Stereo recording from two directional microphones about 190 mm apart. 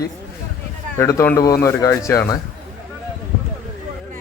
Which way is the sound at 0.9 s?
15° left (ahead or behind).